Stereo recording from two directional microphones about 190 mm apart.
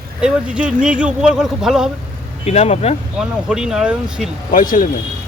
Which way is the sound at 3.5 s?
5° right (ahead or behind).